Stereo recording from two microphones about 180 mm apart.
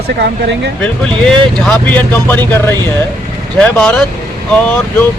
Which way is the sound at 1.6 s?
5° left (ahead or behind).